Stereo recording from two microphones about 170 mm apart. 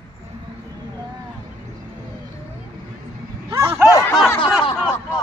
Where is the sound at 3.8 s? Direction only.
20° left (ahead or behind).